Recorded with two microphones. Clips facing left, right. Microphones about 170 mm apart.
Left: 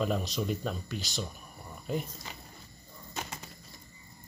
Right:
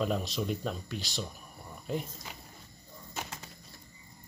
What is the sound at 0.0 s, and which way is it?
Speech, centre (ahead or behind).